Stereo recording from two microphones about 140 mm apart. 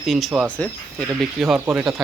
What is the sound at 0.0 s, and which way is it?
Speech, centre (ahead or behind).